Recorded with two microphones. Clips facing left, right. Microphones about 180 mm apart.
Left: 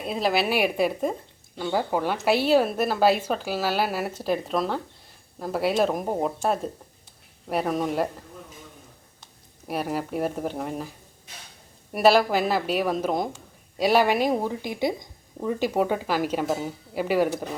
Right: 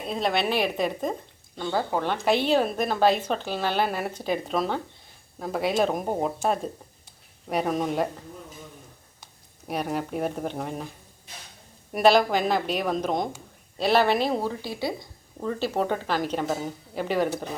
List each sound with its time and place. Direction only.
0.0 s a woman's voice: centre (ahead or behind)
9.6 s a woman's voice: 5° left (ahead or behind)